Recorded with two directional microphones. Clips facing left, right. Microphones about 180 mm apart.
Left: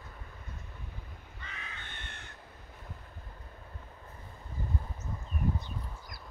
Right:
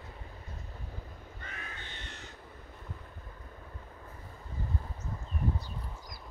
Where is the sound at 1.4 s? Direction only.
50° right (ahead or behind).